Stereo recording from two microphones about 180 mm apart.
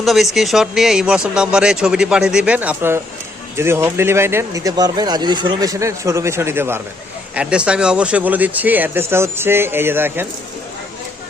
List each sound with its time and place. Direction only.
0.0 s speech: centre (ahead or behind)